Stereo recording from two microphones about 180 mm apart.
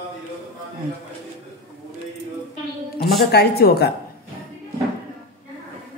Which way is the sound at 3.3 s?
65° left (ahead or behind).